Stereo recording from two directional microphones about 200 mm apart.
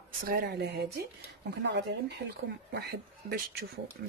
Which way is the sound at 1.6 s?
60° right (ahead or behind).